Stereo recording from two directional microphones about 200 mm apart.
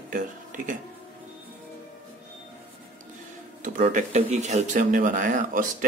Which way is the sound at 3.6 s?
40° right (ahead or behind).